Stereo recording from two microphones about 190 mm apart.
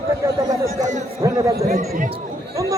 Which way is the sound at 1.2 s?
15° right (ahead or behind).